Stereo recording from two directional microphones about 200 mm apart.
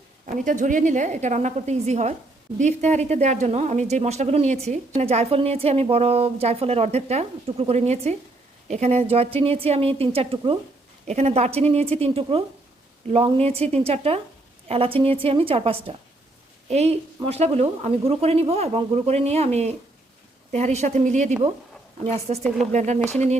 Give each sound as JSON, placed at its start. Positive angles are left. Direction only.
{"t": 0.3, "sound": "a woman's voice", "side_deg": -40}